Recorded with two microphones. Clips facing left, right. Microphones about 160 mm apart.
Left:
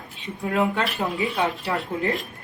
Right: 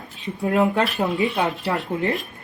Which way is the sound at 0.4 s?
40° right (ahead or behind).